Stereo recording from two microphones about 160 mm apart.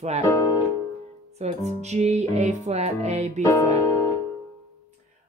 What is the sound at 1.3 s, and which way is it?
Music, 45° right (ahead or behind).